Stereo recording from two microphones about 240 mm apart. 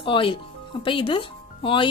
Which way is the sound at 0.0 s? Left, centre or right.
Left.